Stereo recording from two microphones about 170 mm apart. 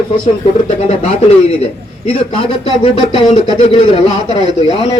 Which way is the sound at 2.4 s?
40° left (ahead or behind).